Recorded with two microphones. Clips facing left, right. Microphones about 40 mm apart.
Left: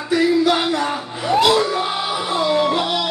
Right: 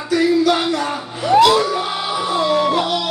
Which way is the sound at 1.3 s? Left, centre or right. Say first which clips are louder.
Right 5 dB; right.